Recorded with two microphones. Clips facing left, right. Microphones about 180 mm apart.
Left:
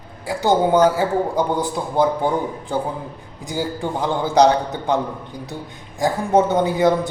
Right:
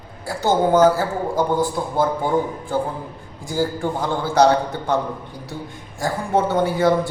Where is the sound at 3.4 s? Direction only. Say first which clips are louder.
Right 2 dB; 20° left (ahead or behind).